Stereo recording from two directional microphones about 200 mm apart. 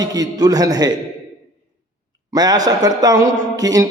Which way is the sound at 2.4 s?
20° right (ahead or behind).